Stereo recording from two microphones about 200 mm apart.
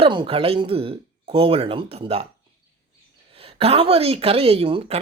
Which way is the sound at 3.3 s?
30° right (ahead or behind).